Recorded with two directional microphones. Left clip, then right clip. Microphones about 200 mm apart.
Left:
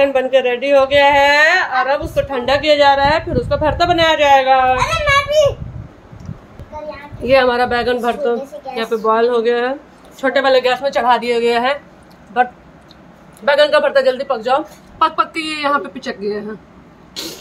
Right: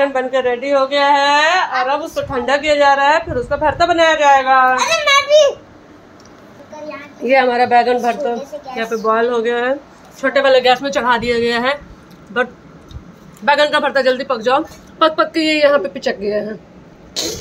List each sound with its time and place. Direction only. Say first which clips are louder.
0.0 s a woman's voice: left 2 dB; 15° left (ahead or behind)
3.0 s a woman's voice: right 1 dB; 25° left (ahead or behind)
3.5 s a woman's voice: right 1 dB; 10° left (ahead or behind)
4.7 s a child's voice: right 1 dB; 40° right (ahead or behind)
7.2 s a woman's voice: even; 5° left (ahead or behind)
13.5 s a woman's voice: left 1 dB; centre (ahead or behind)
17.1 s a sound: right 6 dB; 20° right (ahead or behind)